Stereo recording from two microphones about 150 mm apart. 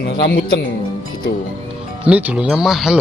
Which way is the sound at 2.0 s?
10° right (ahead or behind).